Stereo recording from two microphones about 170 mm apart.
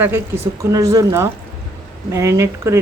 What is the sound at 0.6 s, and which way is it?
Speech, 20° right (ahead or behind).